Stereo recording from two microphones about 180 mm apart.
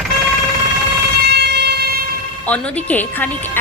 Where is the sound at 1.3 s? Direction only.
65° right (ahead or behind).